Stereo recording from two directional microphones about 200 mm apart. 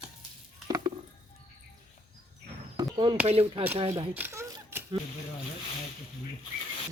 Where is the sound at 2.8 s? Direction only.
25° right (ahead or behind).